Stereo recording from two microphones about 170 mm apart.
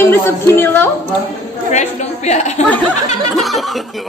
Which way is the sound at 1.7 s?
40° left (ahead or behind).